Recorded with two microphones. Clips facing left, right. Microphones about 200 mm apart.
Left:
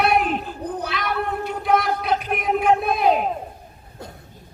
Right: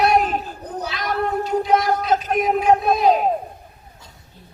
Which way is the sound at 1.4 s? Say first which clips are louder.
Right 2 dB; 60° left (ahead or behind).